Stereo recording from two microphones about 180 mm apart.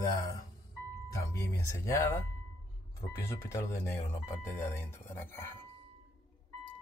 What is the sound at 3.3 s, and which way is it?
Speech, 15° left (ahead or behind).